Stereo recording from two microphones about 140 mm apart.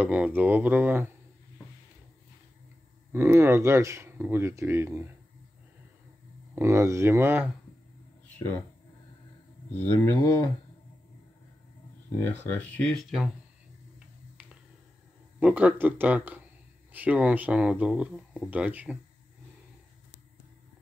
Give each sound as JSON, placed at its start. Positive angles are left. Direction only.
{"t": 0.0, "sound": "speech", "side_deg": -10}
{"t": 3.1, "sound": "speech", "side_deg": -20}
{"t": 6.5, "sound": "speech", "side_deg": -20}
{"t": 9.8, "sound": "speech", "side_deg": 15}
{"t": 12.2, "sound": "speech", "side_deg": 15}
{"t": 13.9, "sound": "finger snapping", "side_deg": -10}
{"t": 15.3, "sound": "speech", "side_deg": -10}